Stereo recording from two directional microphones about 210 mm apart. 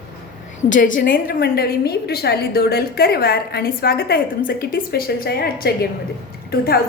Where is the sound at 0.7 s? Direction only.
40° left (ahead or behind).